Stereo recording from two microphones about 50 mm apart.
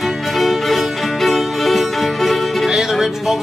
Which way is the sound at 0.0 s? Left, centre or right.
Centre.